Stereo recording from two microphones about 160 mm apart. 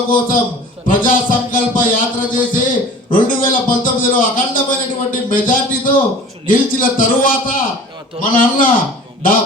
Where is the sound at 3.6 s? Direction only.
60° left (ahead or behind).